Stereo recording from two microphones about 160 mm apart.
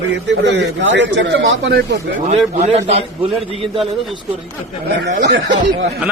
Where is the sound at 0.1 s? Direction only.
90° right.